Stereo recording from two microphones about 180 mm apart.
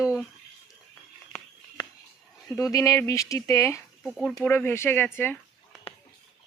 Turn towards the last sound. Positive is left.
turn(degrees=10)  # may be behind; listen again after turning